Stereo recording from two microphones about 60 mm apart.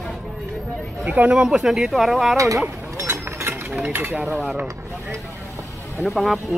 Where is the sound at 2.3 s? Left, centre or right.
Right.